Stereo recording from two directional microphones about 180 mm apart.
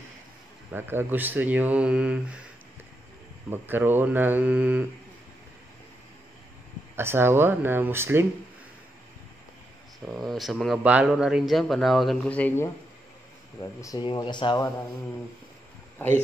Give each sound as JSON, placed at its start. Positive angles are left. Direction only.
{"t": 0.7, "sound": "speech", "side_deg": -10}
{"t": 3.4, "sound": "speech", "side_deg": -10}
{"t": 7.0, "sound": "speech", "side_deg": -15}
{"t": 10.0, "sound": "speech", "side_deg": 0}